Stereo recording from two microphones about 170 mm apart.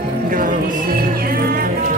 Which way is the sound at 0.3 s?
55° right (ahead or behind).